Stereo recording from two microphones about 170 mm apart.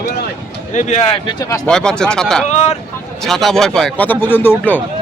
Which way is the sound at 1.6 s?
5° left (ahead or behind).